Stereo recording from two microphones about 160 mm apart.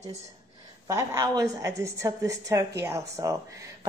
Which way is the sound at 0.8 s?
20° right (ahead or behind).